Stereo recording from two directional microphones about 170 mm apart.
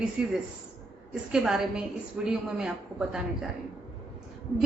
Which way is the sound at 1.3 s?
Centre (ahead or behind).